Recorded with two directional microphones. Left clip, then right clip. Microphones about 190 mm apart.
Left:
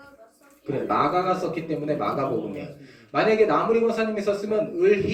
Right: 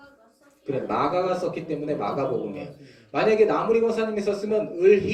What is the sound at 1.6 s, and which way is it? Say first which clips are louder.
A man's voice: left 1 dB; 35° right (ahead or behind).